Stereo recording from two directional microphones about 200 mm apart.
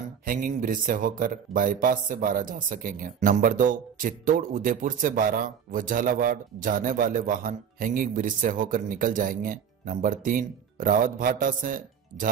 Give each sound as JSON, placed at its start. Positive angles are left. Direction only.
{"t": 0.2, "sound": "speech", "side_deg": -45}